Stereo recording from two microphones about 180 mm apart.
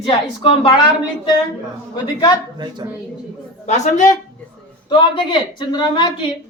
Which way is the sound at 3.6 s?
40° left (ahead or behind).